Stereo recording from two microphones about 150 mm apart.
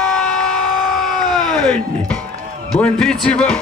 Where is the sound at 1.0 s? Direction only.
Centre (ahead or behind).